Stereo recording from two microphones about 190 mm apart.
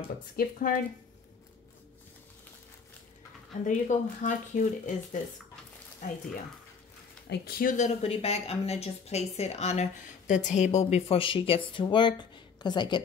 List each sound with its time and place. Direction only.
0.4 s speech: 50° left (ahead or behind)
3.6 s speech: 45° left (ahead or behind)
7.2 s speech: 55° left (ahead or behind); by 13.0 s 25° left (ahead or behind)